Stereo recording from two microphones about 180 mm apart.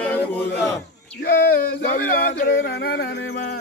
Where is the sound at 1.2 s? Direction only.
60° left (ahead or behind).